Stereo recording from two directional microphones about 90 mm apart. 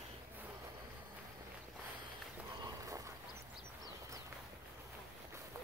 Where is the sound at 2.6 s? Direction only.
45° right (ahead or behind).